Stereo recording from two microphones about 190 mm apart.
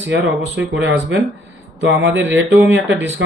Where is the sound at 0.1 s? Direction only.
75° right (ahead or behind).